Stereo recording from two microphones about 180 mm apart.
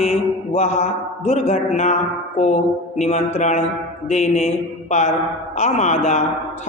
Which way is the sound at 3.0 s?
40° left (ahead or behind).